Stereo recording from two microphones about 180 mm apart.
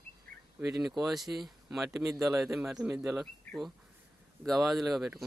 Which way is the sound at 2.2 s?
Centre (ahead or behind).